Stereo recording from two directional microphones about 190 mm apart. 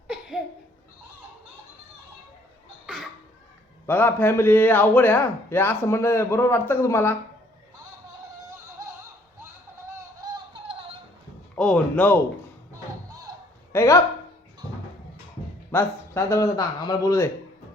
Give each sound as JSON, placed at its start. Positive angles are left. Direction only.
{"t": 2.8, "sound": "cough", "side_deg": 0}
{"t": 3.8, "sound": "a man's voice", "side_deg": 10}
{"t": 10.2, "sound": "music", "side_deg": -25}
{"t": 11.5, "sound": "a man's voice", "side_deg": 5}
{"t": 13.1, "sound": "basketball bounce", "side_deg": -20}
{"t": 13.7, "sound": "a man's voice", "side_deg": 15}
{"t": 15.7, "sound": "a man's voice", "side_deg": 15}